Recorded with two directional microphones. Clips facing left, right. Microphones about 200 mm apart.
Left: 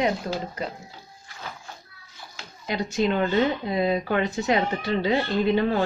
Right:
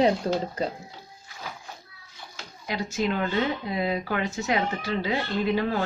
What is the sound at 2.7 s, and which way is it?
Speech, 25° left (ahead or behind).